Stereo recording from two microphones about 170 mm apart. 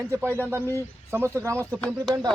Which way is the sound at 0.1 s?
15° right (ahead or behind).